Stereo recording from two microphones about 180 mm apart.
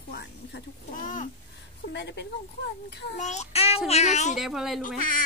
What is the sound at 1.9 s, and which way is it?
A child's voice, 70° left (ahead or behind).